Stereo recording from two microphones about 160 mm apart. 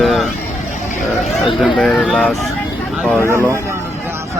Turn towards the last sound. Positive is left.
turn(degrees=15)  # may be behind; listen again after turning